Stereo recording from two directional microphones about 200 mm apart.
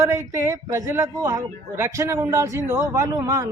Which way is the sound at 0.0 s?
15° right (ahead or behind).